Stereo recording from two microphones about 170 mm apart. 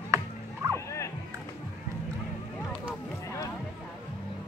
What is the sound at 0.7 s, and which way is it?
Music, 15° left (ahead or behind).